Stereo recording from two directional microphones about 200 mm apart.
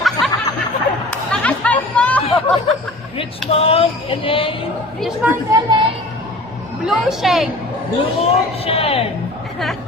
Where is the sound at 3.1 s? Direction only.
30° left (ahead or behind).